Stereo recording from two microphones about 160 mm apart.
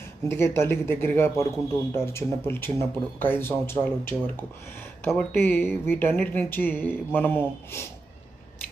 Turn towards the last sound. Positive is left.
turn(degrees=15)  # may be behind; listen again after turning